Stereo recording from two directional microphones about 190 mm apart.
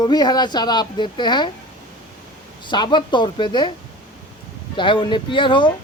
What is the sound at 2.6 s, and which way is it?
Speech, 25° left (ahead or behind).